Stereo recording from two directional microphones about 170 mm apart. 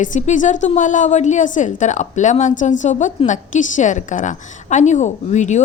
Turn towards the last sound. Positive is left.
turn(degrees=45)  # may be behind; listen again after turning